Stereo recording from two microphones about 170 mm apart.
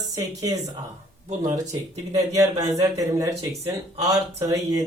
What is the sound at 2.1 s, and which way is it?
Speech, 20° right (ahead or behind).